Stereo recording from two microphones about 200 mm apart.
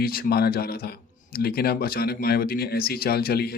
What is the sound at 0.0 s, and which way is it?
Speech, 50° left (ahead or behind).